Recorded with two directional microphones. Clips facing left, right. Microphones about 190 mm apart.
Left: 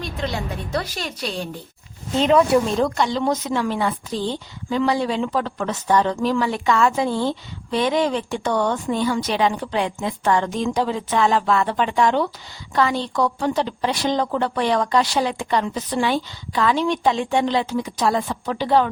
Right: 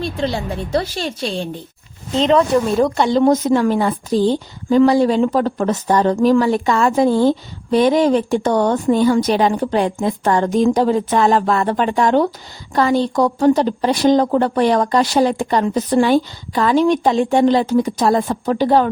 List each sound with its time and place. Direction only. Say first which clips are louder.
0.0 s speech: right 6 dB; 30° right (ahead or behind)
2.1 s a woman's voice: right 2 dB; 5° left (ahead or behind)
3.1 s a woman's voice: right 9 dB; 45° right (ahead or behind)